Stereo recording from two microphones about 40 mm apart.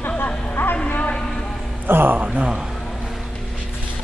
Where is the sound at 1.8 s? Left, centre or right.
Right.